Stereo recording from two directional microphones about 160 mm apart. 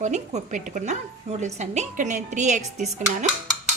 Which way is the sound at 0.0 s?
45° right (ahead or behind).